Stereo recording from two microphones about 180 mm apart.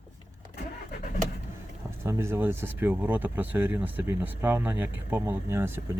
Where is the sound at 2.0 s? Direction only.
15° right (ahead or behind).